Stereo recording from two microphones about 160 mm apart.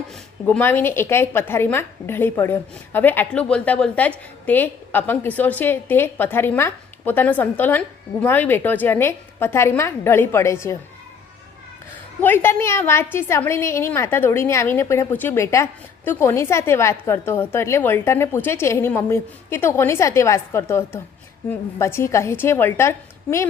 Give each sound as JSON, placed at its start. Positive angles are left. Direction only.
{"t": 0.4, "sound": "a woman's voice", "side_deg": 10}
{"t": 12.2, "sound": "a woman's voice", "side_deg": 15}